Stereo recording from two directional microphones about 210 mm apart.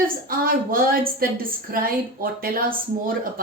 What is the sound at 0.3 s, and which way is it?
A woman's voice, 45° right (ahead or behind).